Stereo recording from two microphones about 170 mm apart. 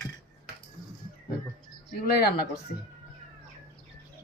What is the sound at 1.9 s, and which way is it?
Speech, 65° left (ahead or behind).